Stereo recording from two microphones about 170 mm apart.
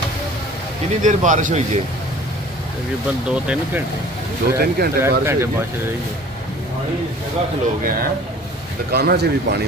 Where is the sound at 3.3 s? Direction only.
5° right (ahead or behind).